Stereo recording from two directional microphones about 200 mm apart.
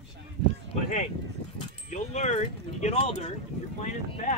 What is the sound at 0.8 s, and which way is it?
Speech, 35° left (ahead or behind).